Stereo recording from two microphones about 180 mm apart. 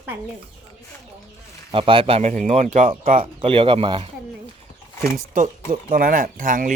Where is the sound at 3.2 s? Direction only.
30° right (ahead or behind).